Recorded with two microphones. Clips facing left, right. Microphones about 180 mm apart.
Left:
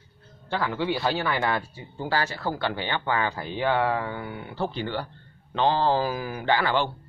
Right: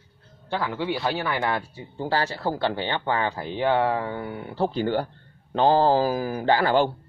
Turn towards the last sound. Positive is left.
turn(degrees=-45)  # may be behind; listen again after turning